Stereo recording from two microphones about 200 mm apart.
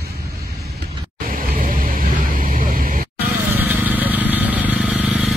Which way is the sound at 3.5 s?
10° right (ahead or behind).